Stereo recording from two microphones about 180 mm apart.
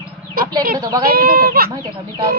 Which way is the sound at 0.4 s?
50° right (ahead or behind).